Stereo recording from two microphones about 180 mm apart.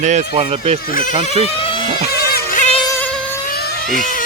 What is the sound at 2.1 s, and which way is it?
Music, 60° left (ahead or behind).